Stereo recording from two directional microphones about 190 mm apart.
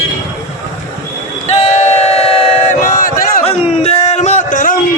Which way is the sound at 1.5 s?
35° left (ahead or behind).